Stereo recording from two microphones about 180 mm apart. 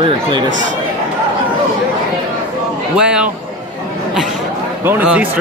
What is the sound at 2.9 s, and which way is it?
Speech, 5° right (ahead or behind).